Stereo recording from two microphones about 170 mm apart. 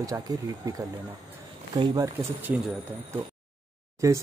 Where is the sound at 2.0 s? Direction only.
10° right (ahead or behind).